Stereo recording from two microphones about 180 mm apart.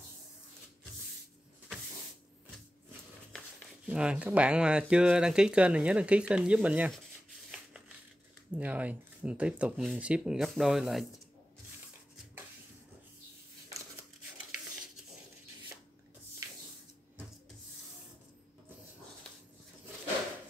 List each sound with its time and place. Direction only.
3.8 s speech: 5° right (ahead or behind)
8.5 s speech: 10° right (ahead or behind)